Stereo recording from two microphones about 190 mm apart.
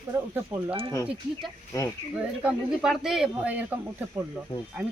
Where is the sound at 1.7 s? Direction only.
15° left (ahead or behind).